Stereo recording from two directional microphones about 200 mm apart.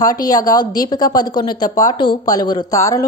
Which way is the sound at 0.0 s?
20° left (ahead or behind).